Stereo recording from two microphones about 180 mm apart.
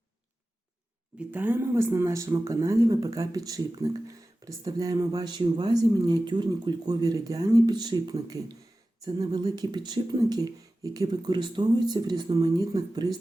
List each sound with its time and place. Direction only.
1.3 s speech: 10° right (ahead or behind)